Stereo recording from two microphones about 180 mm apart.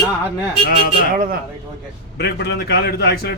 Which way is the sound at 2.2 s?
65° left (ahead or behind).